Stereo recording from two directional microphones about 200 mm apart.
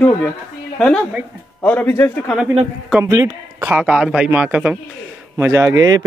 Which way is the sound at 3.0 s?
15° right (ahead or behind).